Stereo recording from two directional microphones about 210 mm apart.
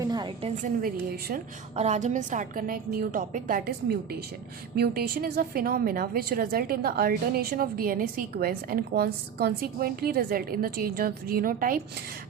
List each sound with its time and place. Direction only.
0.0 s a sound: 20° right (ahead or behind)
0.5 s a woman's voice: 40° right (ahead or behind)
1.7 s a woman's voice: 30° right (ahead or behind)